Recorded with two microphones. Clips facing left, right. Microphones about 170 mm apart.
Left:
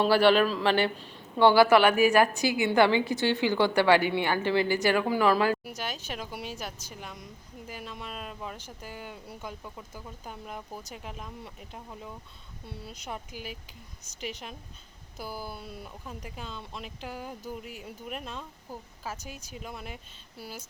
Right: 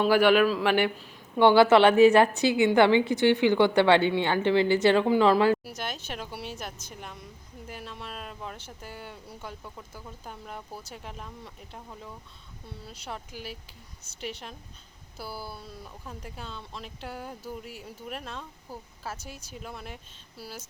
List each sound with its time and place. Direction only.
0.0 s a man's voice: 10° right (ahead or behind)
1.4 s a woman's voice: 20° right (ahead or behind)
5.7 s speech: 10° left (ahead or behind)
15.2 s speech: 15° left (ahead or behind); by 20.5 s centre (ahead or behind)